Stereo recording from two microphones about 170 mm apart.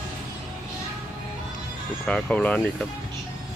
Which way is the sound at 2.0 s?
5° left (ahead or behind).